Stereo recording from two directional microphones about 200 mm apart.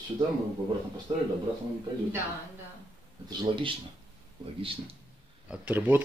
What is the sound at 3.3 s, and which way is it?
Speech, 25° right (ahead or behind).